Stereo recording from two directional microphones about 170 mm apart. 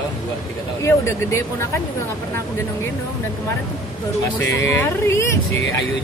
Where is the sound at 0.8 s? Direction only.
15° left (ahead or behind).